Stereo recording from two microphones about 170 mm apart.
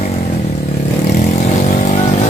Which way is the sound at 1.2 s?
45° left (ahead or behind).